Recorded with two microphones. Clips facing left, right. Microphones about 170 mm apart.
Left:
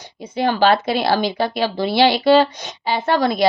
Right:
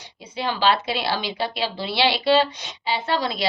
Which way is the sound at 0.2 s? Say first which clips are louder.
Left 7 dB; 50° left (ahead or behind).